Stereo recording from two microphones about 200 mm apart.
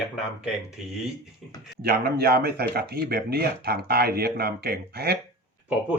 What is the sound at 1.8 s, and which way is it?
Speech, 50° right (ahead or behind).